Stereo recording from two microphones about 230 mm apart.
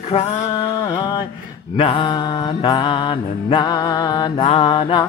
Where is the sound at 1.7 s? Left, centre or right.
Left.